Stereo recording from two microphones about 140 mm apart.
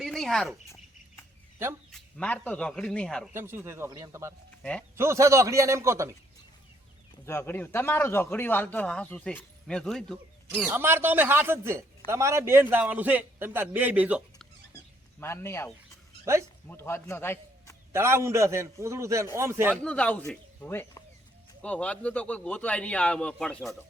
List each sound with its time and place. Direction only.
0.0 s cricket: centre (ahead or behind)
1.9 s a man's voice: 5° left (ahead or behind)
3.3 s a man's voice: 15° right (ahead or behind)
7.3 s a man's voice: 15° left (ahead or behind)
10.7 s a man's voice: 15° right (ahead or behind)
15.2 s a man's voice: 20° left (ahead or behind)
16.2 s speech: 20° right (ahead or behind)
16.6 s a man's voice: 15° left (ahead or behind)
17.9 s a man's voice: 20° right (ahead or behind)
19.7 s a man's voice: 5° left (ahead or behind)